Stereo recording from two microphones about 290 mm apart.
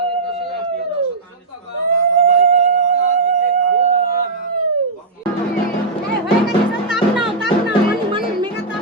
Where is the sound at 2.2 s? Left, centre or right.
Right.